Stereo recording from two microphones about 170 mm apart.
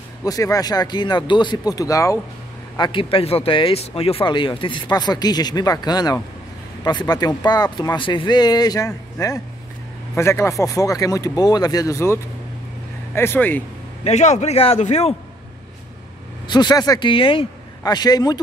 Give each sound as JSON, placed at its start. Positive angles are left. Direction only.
{"t": 0.2, "sound": "speech", "side_deg": 20}
{"t": 2.8, "sound": "speech", "side_deg": 30}
{"t": 14.0, "sound": "a man's voice", "side_deg": 45}
{"t": 16.4, "sound": "speech", "side_deg": 25}